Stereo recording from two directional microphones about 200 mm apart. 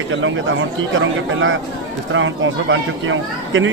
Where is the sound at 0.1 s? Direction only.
70° right (ahead or behind).